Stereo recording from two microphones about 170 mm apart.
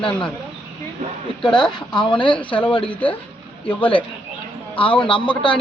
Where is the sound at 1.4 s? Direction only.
30° left (ahead or behind).